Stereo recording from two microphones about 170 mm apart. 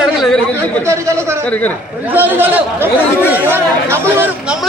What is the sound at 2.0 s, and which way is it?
A man's voice, 10° right (ahead or behind).